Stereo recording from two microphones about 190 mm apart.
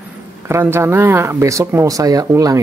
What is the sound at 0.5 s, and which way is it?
Speech, 15° right (ahead or behind).